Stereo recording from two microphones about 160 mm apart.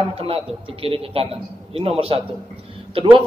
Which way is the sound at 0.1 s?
35° right (ahead or behind).